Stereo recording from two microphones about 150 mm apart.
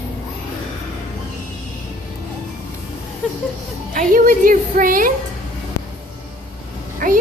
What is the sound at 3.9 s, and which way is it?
A child's voice, 65° right (ahead or behind).